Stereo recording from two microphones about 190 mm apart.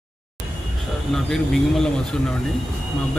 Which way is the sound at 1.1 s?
Centre (ahead or behind).